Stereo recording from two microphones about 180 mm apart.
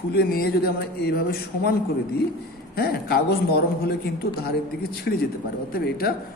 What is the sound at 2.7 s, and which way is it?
A man's voice, 60° left (ahead or behind).